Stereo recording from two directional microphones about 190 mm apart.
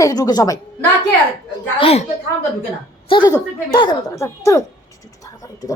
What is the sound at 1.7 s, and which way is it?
Speech, 30° left (ahead or behind).